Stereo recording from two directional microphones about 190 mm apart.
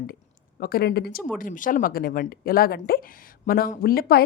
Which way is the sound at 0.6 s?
50° left (ahead or behind).